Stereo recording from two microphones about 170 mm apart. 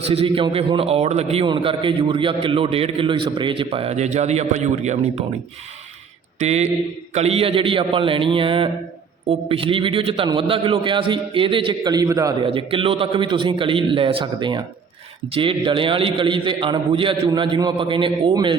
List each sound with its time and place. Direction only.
0.0 s a man's voice: 35° right (ahead or behind)
6.4 s a man's voice: 40° right (ahead or behind); by 12.5 s 20° right (ahead or behind)
12.5 s a man's voice: 30° right (ahead or behind)